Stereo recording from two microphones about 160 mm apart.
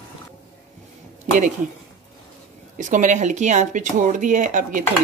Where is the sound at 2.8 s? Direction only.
50° right (ahead or behind).